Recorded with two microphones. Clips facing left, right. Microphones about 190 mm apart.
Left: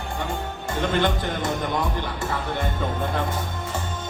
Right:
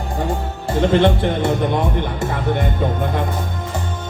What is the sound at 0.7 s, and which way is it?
A man's voice, 30° right (ahead or behind).